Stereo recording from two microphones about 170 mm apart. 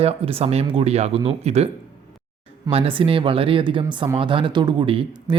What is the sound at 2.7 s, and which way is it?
Speech, 30° right (ahead or behind).